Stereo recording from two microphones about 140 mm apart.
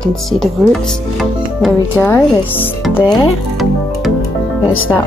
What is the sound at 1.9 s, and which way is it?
Speech, 15° left (ahead or behind).